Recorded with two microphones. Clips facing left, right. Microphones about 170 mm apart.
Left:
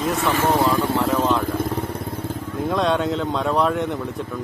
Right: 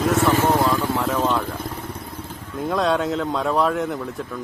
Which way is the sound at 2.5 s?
Centre (ahead or behind).